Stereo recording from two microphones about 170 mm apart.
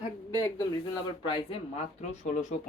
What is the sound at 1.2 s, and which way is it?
Speech, 30° left (ahead or behind).